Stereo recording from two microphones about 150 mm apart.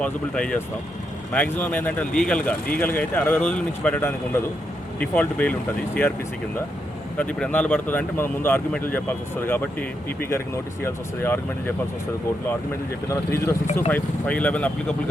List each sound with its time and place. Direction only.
0.0 s speech: 5° left (ahead or behind)
7.2 s speech: 5° left (ahead or behind)
13.1 s speech: 20° left (ahead or behind)